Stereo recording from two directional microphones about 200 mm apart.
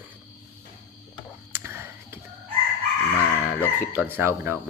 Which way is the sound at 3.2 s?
15° left (ahead or behind).